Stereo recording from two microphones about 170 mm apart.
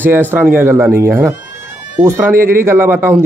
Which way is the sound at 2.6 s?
15° right (ahead or behind).